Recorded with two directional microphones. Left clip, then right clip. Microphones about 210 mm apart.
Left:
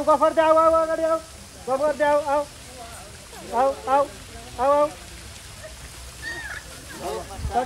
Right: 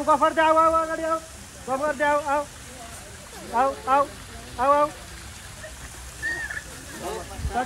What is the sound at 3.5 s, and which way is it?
Speech, 45° left (ahead or behind).